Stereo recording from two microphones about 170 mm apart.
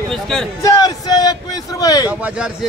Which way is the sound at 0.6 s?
20° left (ahead or behind).